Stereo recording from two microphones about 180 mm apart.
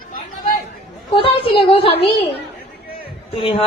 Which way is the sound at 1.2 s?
30° left (ahead or behind).